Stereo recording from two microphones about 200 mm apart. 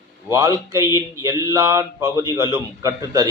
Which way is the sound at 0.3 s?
15° right (ahead or behind).